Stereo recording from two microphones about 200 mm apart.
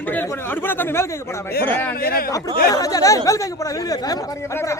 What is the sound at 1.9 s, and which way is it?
Speech, 50° left (ahead or behind).